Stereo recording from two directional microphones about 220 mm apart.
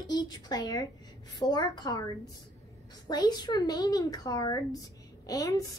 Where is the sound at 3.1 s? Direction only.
20° left (ahead or behind).